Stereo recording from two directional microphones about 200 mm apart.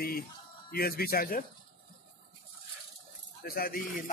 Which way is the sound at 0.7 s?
50° left (ahead or behind).